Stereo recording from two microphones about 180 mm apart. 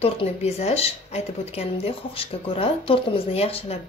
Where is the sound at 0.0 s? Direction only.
35° left (ahead or behind).